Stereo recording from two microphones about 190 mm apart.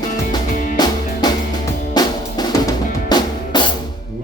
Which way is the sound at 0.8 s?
20° left (ahead or behind).